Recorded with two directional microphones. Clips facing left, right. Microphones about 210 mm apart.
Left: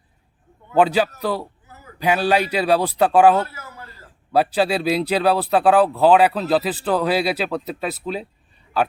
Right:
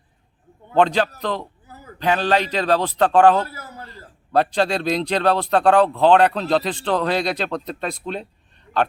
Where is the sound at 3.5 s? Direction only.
35° right (ahead or behind).